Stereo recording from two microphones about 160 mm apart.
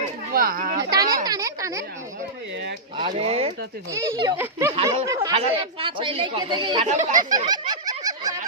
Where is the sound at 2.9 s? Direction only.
30° right (ahead or behind).